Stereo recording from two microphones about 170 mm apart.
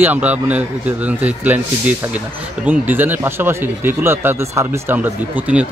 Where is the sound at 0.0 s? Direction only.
10° right (ahead or behind).